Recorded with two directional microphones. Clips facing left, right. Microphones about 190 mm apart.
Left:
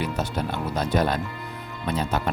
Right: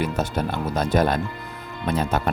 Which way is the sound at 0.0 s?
50° right (ahead or behind).